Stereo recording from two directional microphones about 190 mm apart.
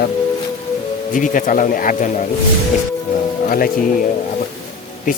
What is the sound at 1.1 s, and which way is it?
Speech, 45° left (ahead or behind).